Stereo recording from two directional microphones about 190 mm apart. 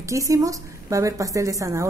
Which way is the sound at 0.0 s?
15° right (ahead or behind).